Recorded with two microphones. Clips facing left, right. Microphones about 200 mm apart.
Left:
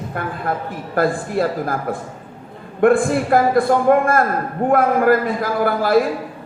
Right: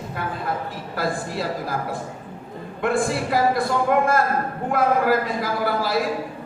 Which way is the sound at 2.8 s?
55° left (ahead or behind).